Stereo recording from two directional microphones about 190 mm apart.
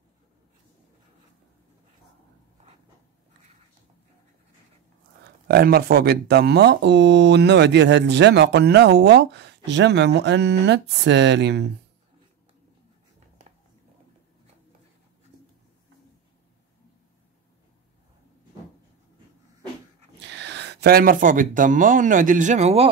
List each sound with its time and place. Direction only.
5.5 s speech: 55° right (ahead or behind)
20.2 s speech: 65° right (ahead or behind); by 22.8 s 35° right (ahead or behind)